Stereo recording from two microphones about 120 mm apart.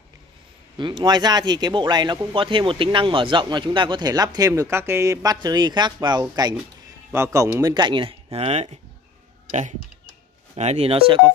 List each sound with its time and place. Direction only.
0.7 s speech: 40° right (ahead or behind)
7.1 s a man's voice: 20° right (ahead or behind)
7.7 s speech: 40° right (ahead or behind); by 8.7 s 60° right (ahead or behind)
9.5 s speech: 80° right
10.5 s speech: 60° right (ahead or behind); by 11.3 s 45° right (ahead or behind)